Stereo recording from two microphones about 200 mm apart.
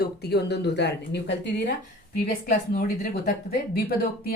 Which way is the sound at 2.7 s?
50° left (ahead or behind).